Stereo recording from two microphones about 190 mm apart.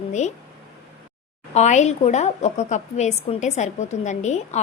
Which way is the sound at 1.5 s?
40° left (ahead or behind).